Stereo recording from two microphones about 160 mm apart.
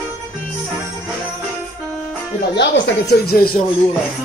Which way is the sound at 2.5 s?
90° left.